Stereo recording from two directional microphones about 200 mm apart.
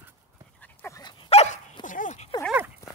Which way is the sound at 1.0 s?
30° left (ahead or behind).